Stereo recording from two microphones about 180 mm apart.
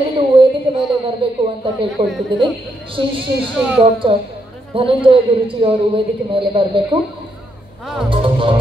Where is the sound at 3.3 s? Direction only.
60° right (ahead or behind).